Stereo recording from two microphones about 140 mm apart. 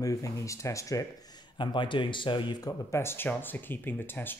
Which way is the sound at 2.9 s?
15° left (ahead or behind).